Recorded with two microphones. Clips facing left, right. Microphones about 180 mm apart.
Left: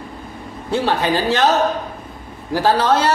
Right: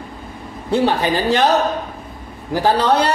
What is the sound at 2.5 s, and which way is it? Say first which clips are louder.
Speech: even; 15° right (ahead or behind).